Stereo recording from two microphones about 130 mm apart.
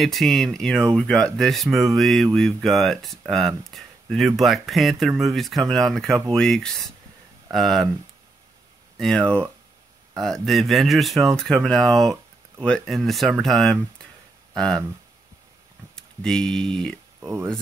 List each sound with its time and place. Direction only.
0.0 s speech: centre (ahead or behind)
8.9 s speech: 5° left (ahead or behind)
16.0 s speech: 5° left (ahead or behind)
17.2 s speech: 20° right (ahead or behind)